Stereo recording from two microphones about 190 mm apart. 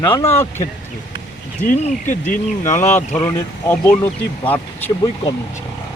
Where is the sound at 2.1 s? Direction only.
40° left (ahead or behind).